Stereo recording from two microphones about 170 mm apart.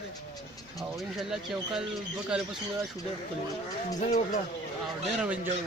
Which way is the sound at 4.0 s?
40° left (ahead or behind).